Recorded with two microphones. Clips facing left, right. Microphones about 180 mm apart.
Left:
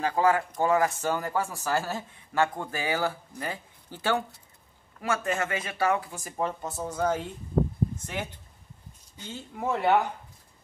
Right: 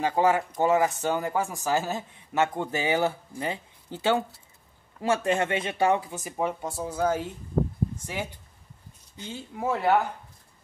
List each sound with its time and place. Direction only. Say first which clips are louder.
0.0 s speech: right 1 dB; 20° right (ahead or behind)
6.2 s speech: right 2 dB; 10° right (ahead or behind)
9.3 s speech: right 1 dB; 5° right (ahead or behind)